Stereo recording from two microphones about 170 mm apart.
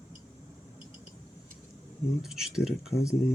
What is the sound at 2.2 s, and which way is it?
Speech, 5° right (ahead or behind).